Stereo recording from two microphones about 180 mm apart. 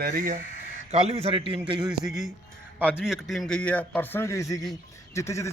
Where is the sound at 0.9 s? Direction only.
35° right (ahead or behind).